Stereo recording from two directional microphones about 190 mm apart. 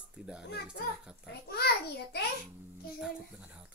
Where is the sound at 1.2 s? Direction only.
55° left (ahead or behind).